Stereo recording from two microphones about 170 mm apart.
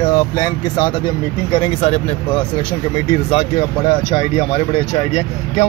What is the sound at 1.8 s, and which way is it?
Speech, 40° left (ahead or behind).